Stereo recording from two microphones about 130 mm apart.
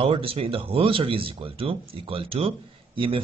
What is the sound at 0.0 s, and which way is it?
Speech, 45° right (ahead or behind).